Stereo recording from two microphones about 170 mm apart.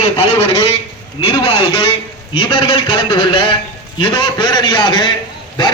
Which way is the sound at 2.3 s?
30° left (ahead or behind).